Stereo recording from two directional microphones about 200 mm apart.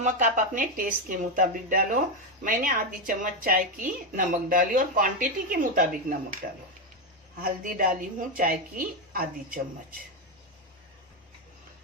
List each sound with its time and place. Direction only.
0.0 s a woman's voice: 40° right (ahead or behind)
7.3 s a woman's voice: 45° right (ahead or behind)